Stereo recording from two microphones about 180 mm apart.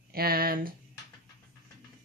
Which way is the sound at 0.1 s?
55° right (ahead or behind).